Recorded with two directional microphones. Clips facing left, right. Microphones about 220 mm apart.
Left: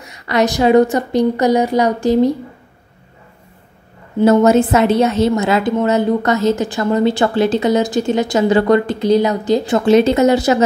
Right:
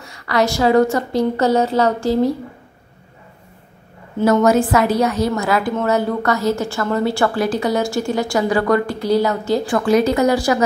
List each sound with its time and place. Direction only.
0.0 s a woman's voice: 20° left (ahead or behind)
4.2 s a woman's voice: 25° left (ahead or behind)